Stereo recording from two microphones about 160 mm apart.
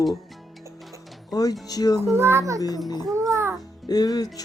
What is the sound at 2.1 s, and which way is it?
Speech, 15° right (ahead or behind).